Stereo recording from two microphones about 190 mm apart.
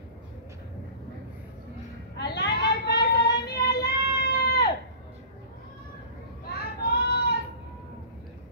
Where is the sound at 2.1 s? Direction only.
65° left (ahead or behind).